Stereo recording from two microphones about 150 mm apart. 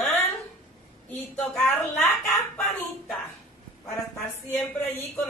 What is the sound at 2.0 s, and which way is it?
Speech, 15° left (ahead or behind).